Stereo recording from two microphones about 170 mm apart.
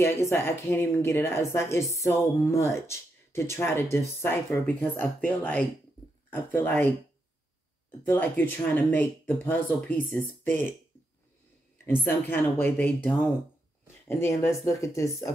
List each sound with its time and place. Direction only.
0.0 s speech: 15° left (ahead or behind)
8.0 s speech: 15° left (ahead or behind)
11.8 s speech: 10° left (ahead or behind)